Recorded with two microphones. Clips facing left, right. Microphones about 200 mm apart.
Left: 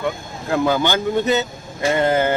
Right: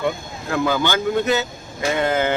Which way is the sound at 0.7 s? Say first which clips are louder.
Right 1 dB; 15° left (ahead or behind).